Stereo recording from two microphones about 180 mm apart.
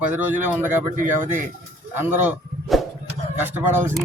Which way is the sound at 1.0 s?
45° right (ahead or behind).